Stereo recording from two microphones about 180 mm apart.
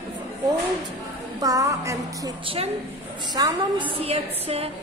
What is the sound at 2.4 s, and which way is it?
A woman's voice, 35° right (ahead or behind).